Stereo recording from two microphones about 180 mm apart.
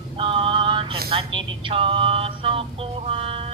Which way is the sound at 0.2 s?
30° right (ahead or behind).